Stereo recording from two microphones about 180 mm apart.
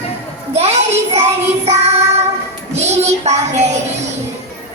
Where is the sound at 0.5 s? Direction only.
35° right (ahead or behind).